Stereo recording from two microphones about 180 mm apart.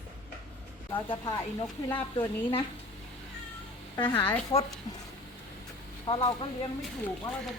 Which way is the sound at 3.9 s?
25° left (ahead or behind).